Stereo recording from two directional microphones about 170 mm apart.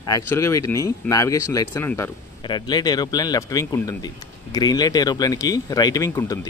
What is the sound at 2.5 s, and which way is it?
Speech, 25° left (ahead or behind).